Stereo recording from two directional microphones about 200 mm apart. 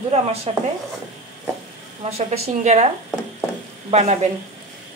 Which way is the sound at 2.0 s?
30° right (ahead or behind).